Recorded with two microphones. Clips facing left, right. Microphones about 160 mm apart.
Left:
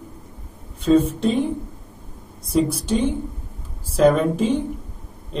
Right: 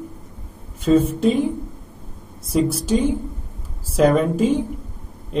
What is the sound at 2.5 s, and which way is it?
Speech, centre (ahead or behind).